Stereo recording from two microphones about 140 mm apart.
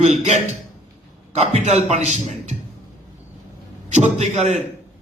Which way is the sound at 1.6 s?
55° right (ahead or behind).